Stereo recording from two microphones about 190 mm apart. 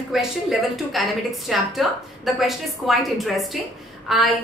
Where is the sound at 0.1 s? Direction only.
Centre (ahead or behind).